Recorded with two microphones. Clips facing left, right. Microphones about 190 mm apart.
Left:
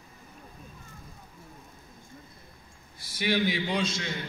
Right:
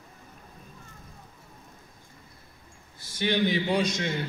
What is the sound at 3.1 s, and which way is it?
Speech, 10° left (ahead or behind).